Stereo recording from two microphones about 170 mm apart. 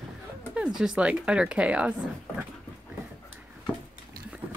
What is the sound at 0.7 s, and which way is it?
Speech, 5° right (ahead or behind).